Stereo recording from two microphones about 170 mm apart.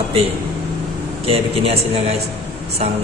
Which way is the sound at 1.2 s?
35° right (ahead or behind).